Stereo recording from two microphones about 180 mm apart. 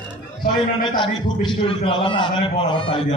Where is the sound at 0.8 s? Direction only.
25° left (ahead or behind).